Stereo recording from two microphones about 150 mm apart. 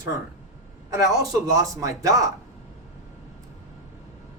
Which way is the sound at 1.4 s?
20° right (ahead or behind).